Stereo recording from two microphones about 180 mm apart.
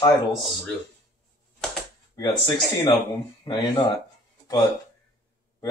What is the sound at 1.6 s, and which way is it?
Typewriter, 5° left (ahead or behind).